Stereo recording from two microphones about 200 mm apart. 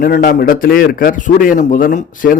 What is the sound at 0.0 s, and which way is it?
Speech, 45° left (ahead or behind).